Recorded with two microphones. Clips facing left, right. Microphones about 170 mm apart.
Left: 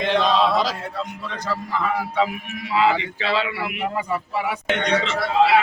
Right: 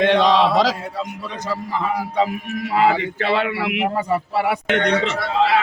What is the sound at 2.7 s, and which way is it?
Speech, 50° right (ahead or behind).